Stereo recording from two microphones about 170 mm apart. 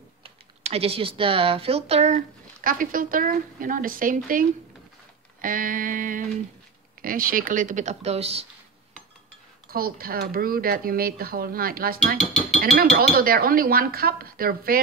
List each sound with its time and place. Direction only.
0.2 s speech: 35° right (ahead or behind)
9.7 s speech: 60° right (ahead or behind)